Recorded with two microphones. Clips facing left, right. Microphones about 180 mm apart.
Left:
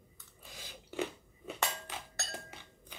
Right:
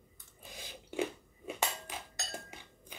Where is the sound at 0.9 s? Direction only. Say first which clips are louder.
Right 2 dB; 15° right (ahead or behind).